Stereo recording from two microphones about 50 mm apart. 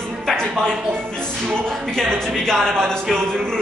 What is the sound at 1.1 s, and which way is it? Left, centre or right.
Music, centre.